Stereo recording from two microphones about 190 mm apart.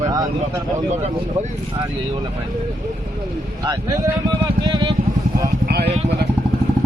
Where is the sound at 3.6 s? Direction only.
20° right (ahead or behind).